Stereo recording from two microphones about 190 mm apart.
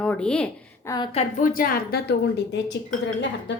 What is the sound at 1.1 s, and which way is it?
A woman's voice, 45° left (ahead or behind).